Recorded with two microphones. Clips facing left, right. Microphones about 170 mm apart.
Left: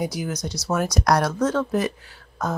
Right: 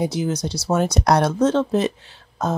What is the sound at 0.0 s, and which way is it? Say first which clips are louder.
Speech: right 5 dB; 25° right (ahead or behind).